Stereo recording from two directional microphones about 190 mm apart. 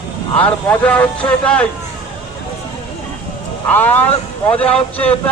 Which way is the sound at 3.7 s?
10° left (ahead or behind).